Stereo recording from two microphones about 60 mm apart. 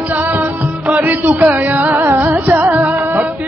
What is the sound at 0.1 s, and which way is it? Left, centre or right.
Music, right.